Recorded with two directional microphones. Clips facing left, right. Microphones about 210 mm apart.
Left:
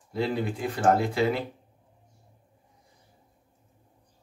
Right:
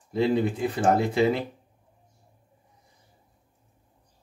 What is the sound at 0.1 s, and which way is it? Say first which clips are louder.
Speech: right 5 dB; 25° right (ahead or behind).